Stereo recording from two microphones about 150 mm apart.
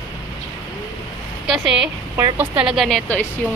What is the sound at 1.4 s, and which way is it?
Speech, 5° right (ahead or behind).